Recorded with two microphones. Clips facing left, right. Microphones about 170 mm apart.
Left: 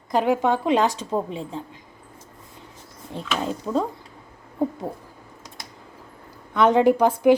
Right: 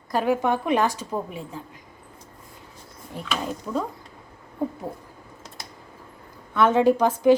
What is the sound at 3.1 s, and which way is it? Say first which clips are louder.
Speech: left 2 dB; 25° left (ahead or behind).